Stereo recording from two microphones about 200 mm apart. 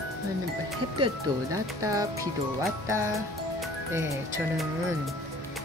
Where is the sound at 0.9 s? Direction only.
20° right (ahead or behind).